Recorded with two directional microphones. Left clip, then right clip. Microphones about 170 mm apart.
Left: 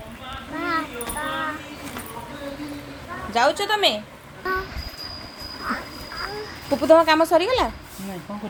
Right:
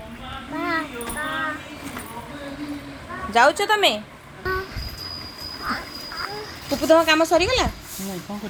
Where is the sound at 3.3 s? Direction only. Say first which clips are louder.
Right 3 dB; 40° right (ahead or behind).